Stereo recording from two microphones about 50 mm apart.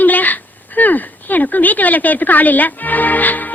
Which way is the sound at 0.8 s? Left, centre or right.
Left.